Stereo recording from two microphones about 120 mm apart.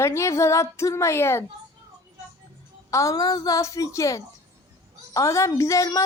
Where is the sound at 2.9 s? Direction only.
25° left (ahead or behind).